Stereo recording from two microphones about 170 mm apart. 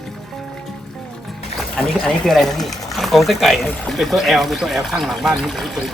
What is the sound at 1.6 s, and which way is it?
Speech, 5° left (ahead or behind).